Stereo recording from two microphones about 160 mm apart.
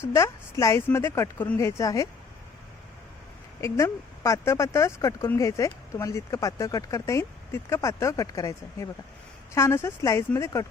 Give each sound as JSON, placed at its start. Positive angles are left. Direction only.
{"t": 0.1, "sound": "speech", "side_deg": 20}
{"t": 3.6, "sound": "speech", "side_deg": 20}